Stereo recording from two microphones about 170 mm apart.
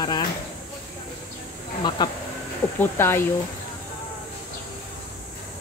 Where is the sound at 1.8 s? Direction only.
25° left (ahead or behind).